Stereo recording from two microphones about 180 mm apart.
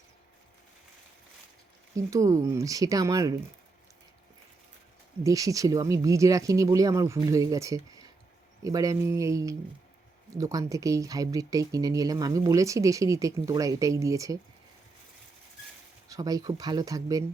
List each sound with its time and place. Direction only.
2.0 s speech: 15° right (ahead or behind)
5.2 s speech: 20° right (ahead or behind)
16.0 s speech: 20° right (ahead or behind)